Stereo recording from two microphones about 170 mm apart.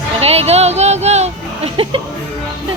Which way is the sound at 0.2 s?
35° right (ahead or behind).